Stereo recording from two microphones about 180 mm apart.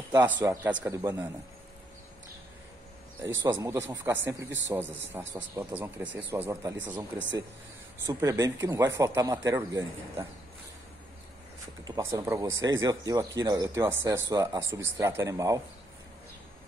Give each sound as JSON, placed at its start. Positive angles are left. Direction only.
{"t": 0.1, "sound": "a man's voice", "side_deg": -15}
{"t": 3.6, "sound": "a man's voice", "side_deg": -15}
{"t": 11.8, "sound": "a man's voice", "side_deg": -20}